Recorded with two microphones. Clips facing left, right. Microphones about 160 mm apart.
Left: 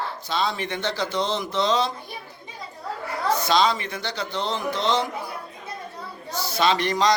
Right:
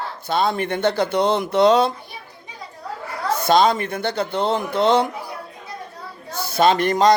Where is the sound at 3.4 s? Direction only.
50° right (ahead or behind).